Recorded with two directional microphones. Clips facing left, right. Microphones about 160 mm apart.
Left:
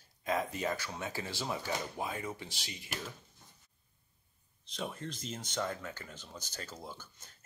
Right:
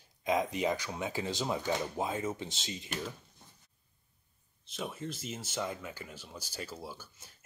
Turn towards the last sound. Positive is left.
turn(degrees=-5)  # may be behind; listen again after turning